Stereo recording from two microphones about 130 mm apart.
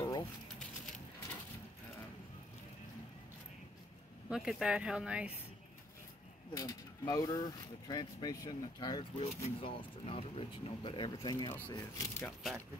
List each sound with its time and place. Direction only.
0.0 s a sound: 30° left (ahead or behind)
4.3 s speech: 5° right (ahead or behind)
6.5 s speech: 30° left (ahead or behind)
9.2 s speech: 45° left (ahead or behind); by 12.2 s 25° left (ahead or behind)